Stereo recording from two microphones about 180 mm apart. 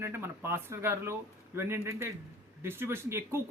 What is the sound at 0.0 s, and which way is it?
Speech, 15° right (ahead or behind).